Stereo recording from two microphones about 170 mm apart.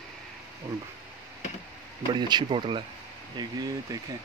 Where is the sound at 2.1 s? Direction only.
25° right (ahead or behind).